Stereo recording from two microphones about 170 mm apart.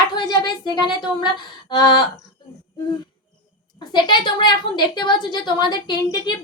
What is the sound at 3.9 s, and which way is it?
A woman's voice, 25° left (ahead or behind).